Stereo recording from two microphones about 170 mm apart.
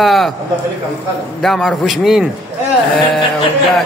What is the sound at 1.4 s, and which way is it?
Speech, 5° left (ahead or behind).